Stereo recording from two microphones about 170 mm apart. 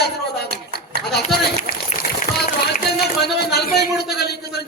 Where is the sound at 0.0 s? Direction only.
70° left (ahead or behind).